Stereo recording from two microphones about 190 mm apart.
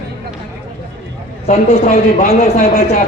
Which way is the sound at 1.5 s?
35° left (ahead or behind).